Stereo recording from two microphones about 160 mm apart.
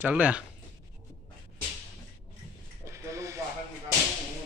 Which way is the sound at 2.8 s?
20° right (ahead or behind).